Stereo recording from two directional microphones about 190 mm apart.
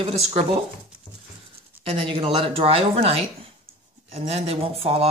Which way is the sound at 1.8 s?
30° right (ahead or behind).